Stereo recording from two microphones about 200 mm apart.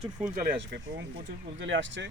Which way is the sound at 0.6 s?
60° right (ahead or behind).